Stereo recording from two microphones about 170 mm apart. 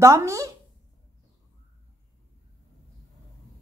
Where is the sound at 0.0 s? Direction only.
15° right (ahead or behind).